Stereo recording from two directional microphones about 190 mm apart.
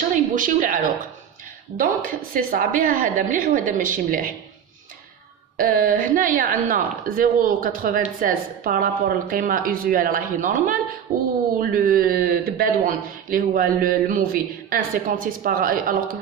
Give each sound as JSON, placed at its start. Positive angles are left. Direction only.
{"t": 0.1, "sound": "a woman's voice", "side_deg": -45}
{"t": 1.8, "sound": "a woman's voice", "side_deg": -45}
{"t": 5.6, "sound": "a woman's voice", "side_deg": -45}